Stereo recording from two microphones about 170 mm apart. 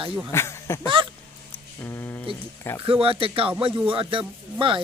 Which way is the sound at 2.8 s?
30° right (ahead or behind).